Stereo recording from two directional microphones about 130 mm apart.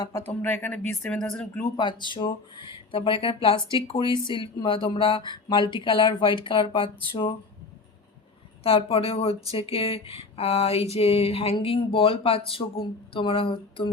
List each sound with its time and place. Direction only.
0.0 s speech: 20° left (ahead or behind)
1.7 s speech: 35° left (ahead or behind)
8.6 s speech: 45° left (ahead or behind)